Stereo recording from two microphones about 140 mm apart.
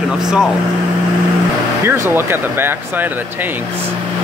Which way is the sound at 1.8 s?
15° right (ahead or behind).